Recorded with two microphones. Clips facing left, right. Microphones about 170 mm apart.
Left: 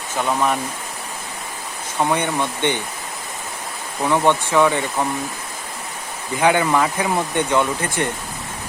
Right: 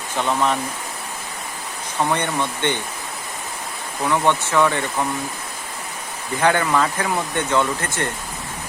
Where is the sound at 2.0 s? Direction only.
10° left (ahead or behind).